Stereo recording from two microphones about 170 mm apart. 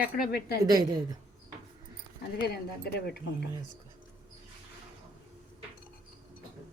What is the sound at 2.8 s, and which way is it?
Speech, 70° left (ahead or behind).